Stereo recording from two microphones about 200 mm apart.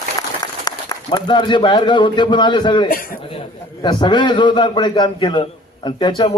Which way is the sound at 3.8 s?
20° left (ahead or behind).